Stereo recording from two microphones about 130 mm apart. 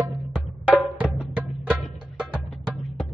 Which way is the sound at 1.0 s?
5° right (ahead or behind).